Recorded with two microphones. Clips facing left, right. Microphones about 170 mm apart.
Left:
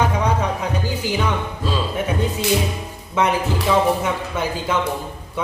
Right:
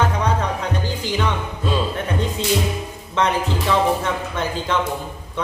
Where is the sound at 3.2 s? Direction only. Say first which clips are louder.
Left 1 dB; 10° left (ahead or behind).